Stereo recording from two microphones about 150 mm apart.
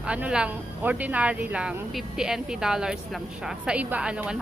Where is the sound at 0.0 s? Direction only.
5° right (ahead or behind).